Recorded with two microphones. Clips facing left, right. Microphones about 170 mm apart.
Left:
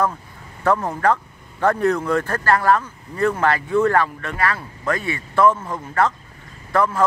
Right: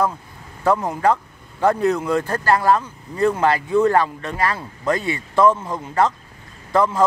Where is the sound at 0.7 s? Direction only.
10° right (ahead or behind).